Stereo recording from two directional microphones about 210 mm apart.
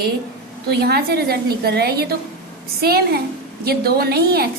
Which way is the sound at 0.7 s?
50° right (ahead or behind).